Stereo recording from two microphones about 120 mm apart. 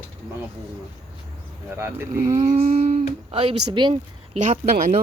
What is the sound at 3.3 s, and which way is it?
Speech, 55° right (ahead or behind).